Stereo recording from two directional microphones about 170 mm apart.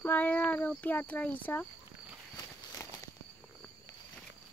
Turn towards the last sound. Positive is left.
turn(degrees=20)  # may be behind; listen again after turning